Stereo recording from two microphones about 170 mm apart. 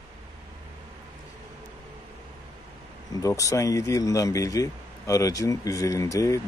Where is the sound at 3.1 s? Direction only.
20° left (ahead or behind).